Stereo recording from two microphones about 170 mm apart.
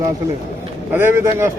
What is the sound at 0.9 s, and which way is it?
Speech, 10° right (ahead or behind).